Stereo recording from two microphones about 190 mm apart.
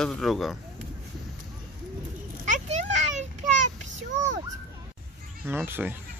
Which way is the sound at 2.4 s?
40° right (ahead or behind).